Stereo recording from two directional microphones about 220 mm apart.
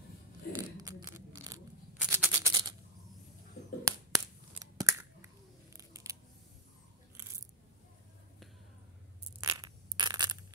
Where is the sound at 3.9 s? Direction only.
15° right (ahead or behind).